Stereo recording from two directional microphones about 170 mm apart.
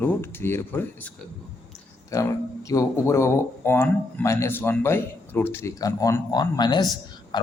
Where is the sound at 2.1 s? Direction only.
20° left (ahead or behind).